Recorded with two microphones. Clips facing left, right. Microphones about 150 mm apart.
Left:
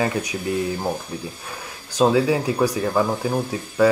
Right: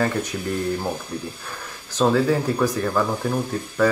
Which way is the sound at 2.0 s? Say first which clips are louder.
Left 1 dB; 10° left (ahead or behind).